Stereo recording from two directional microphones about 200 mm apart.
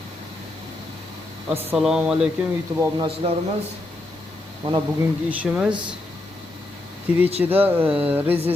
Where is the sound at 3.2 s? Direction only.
25° right (ahead or behind).